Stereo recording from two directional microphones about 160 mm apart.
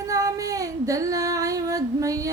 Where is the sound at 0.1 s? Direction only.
20° right (ahead or behind).